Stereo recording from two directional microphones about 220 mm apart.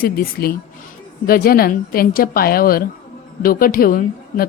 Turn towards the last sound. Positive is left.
turn(degrees=40)  # may be behind; listen again after turning